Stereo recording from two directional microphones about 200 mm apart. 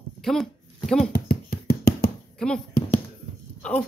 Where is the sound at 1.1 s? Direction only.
50° left (ahead or behind).